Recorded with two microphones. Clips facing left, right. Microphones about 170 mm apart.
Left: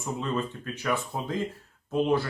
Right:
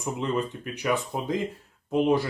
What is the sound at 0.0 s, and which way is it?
Speech, 15° right (ahead or behind).